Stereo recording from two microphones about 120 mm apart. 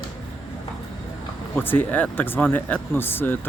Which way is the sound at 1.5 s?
15° left (ahead or behind).